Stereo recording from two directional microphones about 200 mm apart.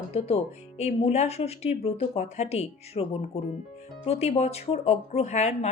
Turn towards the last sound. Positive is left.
turn(degrees=35)  # may be behind; listen again after turning